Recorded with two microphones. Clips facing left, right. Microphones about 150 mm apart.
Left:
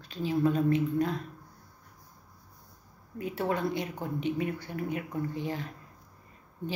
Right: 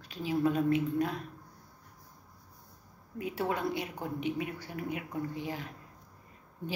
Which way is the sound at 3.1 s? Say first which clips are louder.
Left 2 dB; 10° right (ahead or behind).